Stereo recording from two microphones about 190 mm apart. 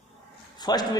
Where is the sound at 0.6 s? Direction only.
20° left (ahead or behind).